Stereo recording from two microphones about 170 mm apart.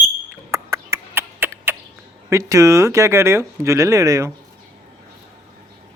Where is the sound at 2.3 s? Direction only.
20° right (ahead or behind).